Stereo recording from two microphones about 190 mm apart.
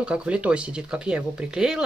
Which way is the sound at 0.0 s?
5° right (ahead or behind).